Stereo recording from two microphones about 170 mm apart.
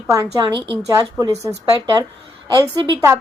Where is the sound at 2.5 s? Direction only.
20° right (ahead or behind).